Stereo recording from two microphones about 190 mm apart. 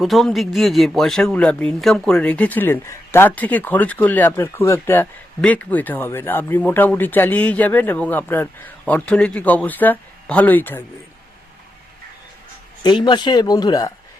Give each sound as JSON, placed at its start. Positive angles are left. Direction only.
{"t": 0.0, "sound": "speech", "side_deg": 0}
{"t": 12.8, "sound": "speech", "side_deg": 25}